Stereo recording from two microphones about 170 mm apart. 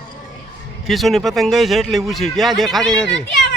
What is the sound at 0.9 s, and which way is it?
Speech, centre (ahead or behind).